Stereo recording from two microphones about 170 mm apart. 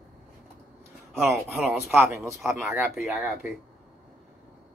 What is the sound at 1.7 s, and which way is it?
Speech, 15° right (ahead or behind).